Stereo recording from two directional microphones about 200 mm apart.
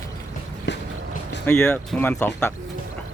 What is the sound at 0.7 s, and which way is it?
Vehicle, 60° left (ahead or behind).